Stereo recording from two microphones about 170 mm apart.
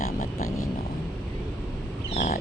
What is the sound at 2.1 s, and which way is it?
Wild animals, 55° left (ahead or behind).